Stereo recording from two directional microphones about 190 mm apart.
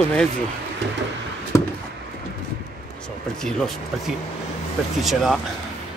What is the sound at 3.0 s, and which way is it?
Speech, 5° left (ahead or behind).